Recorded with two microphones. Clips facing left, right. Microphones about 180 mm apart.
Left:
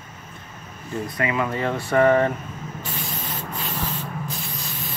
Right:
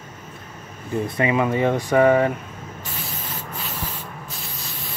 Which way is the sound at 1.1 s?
25° right (ahead or behind).